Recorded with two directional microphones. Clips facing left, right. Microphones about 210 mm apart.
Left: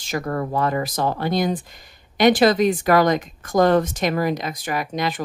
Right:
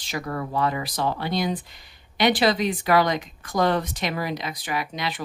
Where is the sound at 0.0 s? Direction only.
45° left (ahead or behind).